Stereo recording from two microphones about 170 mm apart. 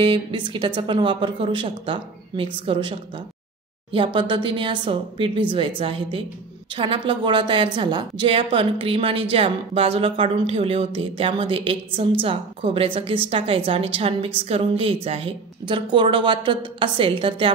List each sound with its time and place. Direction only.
0.0 s a woman's voice: 30° right (ahead or behind)